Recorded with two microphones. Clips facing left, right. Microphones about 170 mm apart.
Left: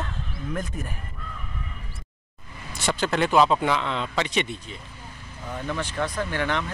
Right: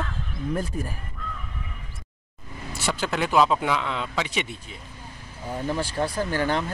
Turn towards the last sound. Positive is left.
turn(degrees=-35)  # may be behind; listen again after turning